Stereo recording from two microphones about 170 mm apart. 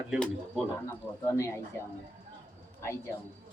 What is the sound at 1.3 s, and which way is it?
Speech, 15° left (ahead or behind).